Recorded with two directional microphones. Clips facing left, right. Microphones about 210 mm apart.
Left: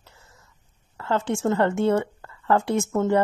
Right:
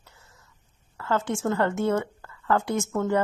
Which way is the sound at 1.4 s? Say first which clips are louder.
Left 3 dB; 25° left (ahead or behind).